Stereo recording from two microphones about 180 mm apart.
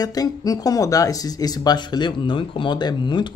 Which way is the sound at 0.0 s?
20° left (ahead or behind).